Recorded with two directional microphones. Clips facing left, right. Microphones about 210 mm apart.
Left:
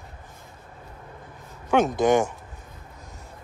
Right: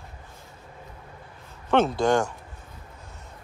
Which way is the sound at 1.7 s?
15° left (ahead or behind).